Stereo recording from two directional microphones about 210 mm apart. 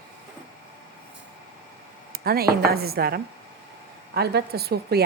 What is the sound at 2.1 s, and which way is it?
A woman's voice, 45° right (ahead or behind).